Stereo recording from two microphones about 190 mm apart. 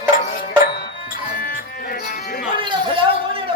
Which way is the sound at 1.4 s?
50° left (ahead or behind).